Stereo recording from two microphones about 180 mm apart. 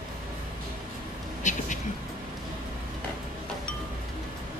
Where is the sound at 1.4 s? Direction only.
40° left (ahead or behind).